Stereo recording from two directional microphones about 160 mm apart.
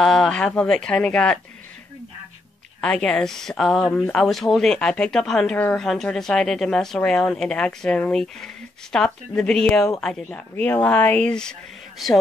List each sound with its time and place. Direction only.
0.0 s speech: centre (ahead or behind)
2.8 s speech: 5° left (ahead or behind)